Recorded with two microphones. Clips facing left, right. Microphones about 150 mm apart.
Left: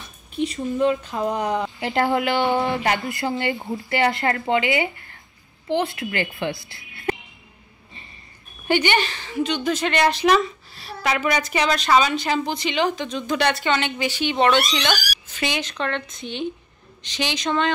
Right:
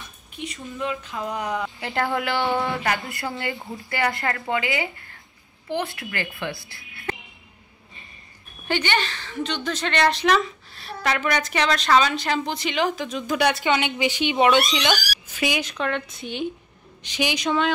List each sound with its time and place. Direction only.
0.4 s a child's voice: 40° left (ahead or behind); by 7.2 s 20° left (ahead or behind)
8.6 s a woman's voice: 15° left (ahead or behind); by 14.3 s 20° right (ahead or behind)
14.3 s a woman's voice: 5° right (ahead or behind)